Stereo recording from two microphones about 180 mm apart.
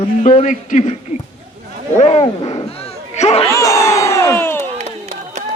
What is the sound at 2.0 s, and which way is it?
Speech, 35° left (ahead or behind).